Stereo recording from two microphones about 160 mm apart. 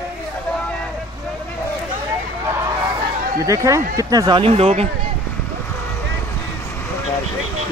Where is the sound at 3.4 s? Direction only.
20° right (ahead or behind); by 4.9 s 40° right (ahead or behind).